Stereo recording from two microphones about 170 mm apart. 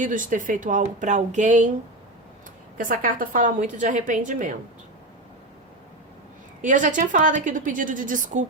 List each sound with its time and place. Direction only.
0.0 s a woman's voice: 50° right (ahead or behind)
2.7 s a woman's voice: 55° right (ahead or behind)
6.6 s a woman's voice: 50° right (ahead or behind)